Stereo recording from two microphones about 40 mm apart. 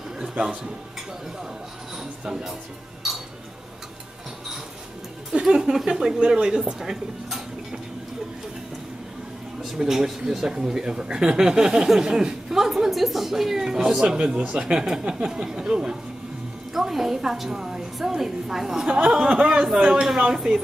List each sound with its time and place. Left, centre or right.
0.2 s music: right
2.2 s speech: centre
5.3 s speech: right
9.8 s speech: centre
14.1 s speech: right
16.7 s speech: centre
18.9 s speech: right